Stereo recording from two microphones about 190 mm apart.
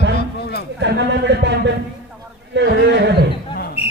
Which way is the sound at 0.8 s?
65° right (ahead or behind).